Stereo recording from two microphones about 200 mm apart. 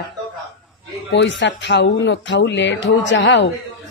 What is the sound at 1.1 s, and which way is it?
A woman's voice, 65° left (ahead or behind).